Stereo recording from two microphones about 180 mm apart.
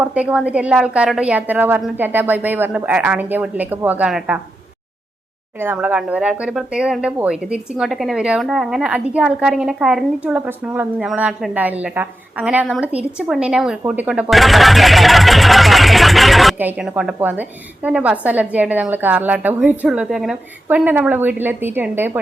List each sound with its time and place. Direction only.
0.0 s a woman's voice: 5° right (ahead or behind)
5.5 s a woman's voice: 10° right (ahead or behind)